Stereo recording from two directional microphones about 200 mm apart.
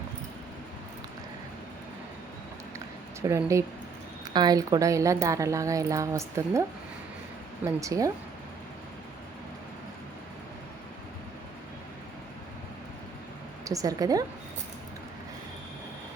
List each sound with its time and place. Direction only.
2.7 s a sound: 15° right (ahead or behind)
4.4 s a woman's voice: 20° right (ahead or behind)
13.7 s a woman's voice: 15° right (ahead or behind)